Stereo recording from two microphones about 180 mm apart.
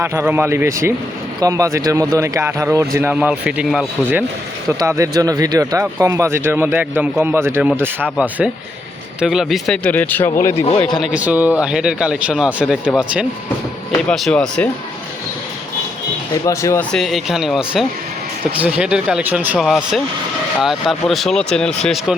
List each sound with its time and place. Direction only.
0.0 s speech: 15° right (ahead or behind)
4.8 s a man's voice: 20° right (ahead or behind)
9.2 s speech: centre (ahead or behind); by 10.5 s 15° left (ahead or behind)
10.9 s speech: 5° right (ahead or behind)
14.1 s speech: 5° left (ahead or behind)
16.5 s speech: 15° left (ahead or behind)
16.9 s speech: centre (ahead or behind)